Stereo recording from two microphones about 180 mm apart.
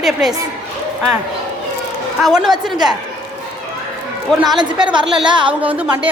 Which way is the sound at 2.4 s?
Centre (ahead or behind).